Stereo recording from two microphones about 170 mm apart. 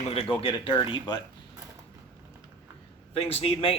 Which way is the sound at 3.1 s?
35° left (ahead or behind).